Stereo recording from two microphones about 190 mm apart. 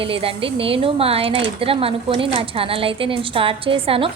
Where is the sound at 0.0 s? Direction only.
30° right (ahead or behind).